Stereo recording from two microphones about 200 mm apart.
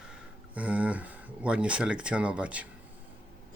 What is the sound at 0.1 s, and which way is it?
Speech, 5° right (ahead or behind).